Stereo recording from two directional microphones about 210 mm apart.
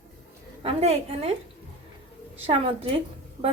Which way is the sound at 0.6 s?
30° right (ahead or behind).